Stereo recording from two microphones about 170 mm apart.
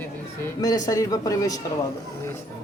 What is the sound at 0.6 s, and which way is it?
A man's voice, 20° left (ahead or behind).